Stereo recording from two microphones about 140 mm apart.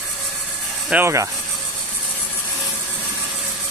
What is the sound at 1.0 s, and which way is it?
Speech, 20° right (ahead or behind).